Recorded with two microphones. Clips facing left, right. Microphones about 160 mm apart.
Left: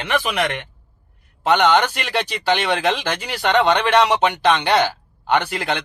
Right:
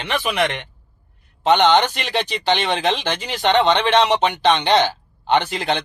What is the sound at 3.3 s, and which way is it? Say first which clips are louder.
Speech: right 1 dB; 25° right (ahead or behind).